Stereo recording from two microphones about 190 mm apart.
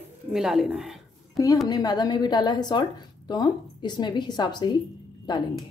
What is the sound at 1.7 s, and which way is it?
A woman's voice, 20° left (ahead or behind).